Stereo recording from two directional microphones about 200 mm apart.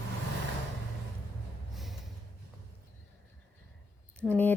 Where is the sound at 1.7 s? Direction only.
Centre (ahead or behind).